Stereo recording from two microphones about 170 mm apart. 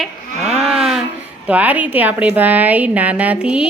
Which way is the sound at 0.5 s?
5° right (ahead or behind).